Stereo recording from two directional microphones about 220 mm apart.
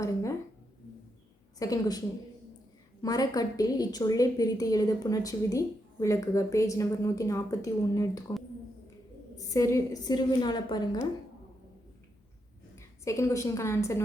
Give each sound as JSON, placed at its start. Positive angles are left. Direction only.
{"t": 0.0, "sound": "speech", "side_deg": 15}
{"t": 1.5, "sound": "a woman's voice", "side_deg": 15}
{"t": 3.0, "sound": "a woman's voice", "side_deg": 15}
{"t": 9.3, "sound": "a woman's voice", "side_deg": 15}
{"t": 12.7, "sound": "a woman's voice", "side_deg": 15}